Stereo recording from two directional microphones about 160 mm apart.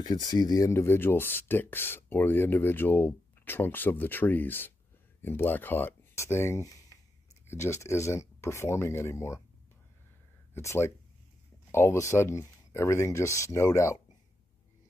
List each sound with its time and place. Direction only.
0.0 s speech: 25° left (ahead or behind)
10.5 s speech: 15° left (ahead or behind)